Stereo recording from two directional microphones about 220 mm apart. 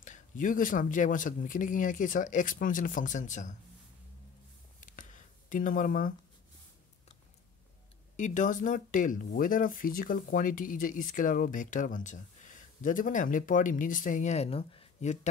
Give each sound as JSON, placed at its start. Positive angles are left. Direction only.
{"t": 0.0, "sound": "speech", "side_deg": 35}
{"t": 4.7, "sound": "a sound", "side_deg": 35}
{"t": 8.2, "sound": "speech", "side_deg": 35}